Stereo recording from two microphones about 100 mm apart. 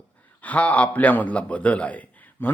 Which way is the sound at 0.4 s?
15° left (ahead or behind).